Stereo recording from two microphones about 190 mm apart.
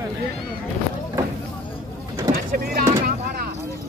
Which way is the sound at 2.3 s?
50° right (ahead or behind).